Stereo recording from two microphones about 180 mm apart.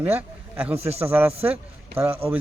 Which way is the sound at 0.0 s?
10° right (ahead or behind).